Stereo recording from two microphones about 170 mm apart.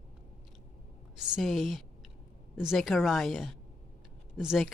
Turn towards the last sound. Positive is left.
turn(degrees=-5)  # may be behind; listen again after turning